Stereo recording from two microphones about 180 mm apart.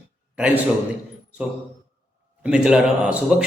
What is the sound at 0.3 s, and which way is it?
Speech, 5° right (ahead or behind).